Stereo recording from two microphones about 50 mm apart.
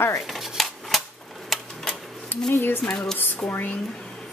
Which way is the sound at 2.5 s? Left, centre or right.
Left.